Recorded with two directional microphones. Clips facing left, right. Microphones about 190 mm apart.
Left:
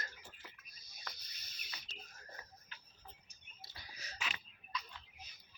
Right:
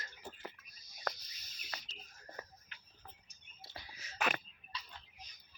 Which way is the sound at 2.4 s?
65° right (ahead or behind).